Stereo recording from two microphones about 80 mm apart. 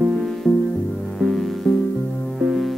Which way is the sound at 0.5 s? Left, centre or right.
Left.